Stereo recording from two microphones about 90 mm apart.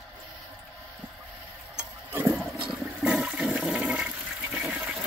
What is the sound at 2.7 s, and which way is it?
Toilet flush, 10° right (ahead or behind).